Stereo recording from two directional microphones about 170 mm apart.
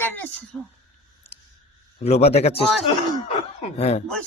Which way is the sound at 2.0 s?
40° left (ahead or behind).